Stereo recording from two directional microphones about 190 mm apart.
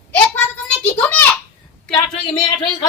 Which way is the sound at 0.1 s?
10° left (ahead or behind).